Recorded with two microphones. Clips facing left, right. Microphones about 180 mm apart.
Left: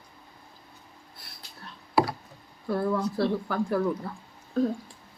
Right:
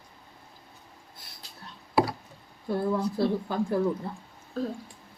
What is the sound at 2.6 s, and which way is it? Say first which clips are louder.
Speech: even; 20° right (ahead or behind).